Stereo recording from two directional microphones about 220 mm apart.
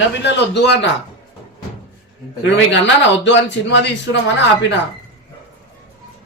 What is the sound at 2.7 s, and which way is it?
A man's voice, 55° left (ahead or behind).